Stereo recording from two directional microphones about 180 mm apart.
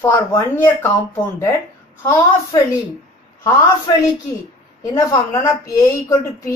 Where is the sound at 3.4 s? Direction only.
15° left (ahead or behind).